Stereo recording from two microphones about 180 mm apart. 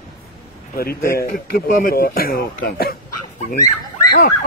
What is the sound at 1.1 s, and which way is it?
Speech, 55° left (ahead or behind).